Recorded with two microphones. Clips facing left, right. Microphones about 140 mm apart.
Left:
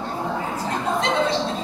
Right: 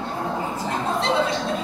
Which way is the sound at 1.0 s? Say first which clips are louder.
Right 1 dB; 35° right (ahead or behind).